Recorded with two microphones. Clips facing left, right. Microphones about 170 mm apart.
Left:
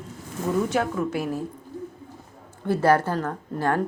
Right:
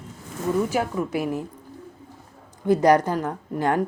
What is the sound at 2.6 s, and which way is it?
A woman's voice, 15° right (ahead or behind).